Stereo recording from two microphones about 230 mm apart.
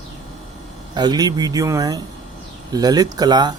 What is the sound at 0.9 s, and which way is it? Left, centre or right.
Speech, centre.